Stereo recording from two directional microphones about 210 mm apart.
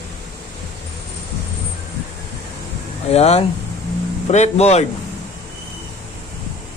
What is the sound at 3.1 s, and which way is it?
Speech, 30° left (ahead or behind).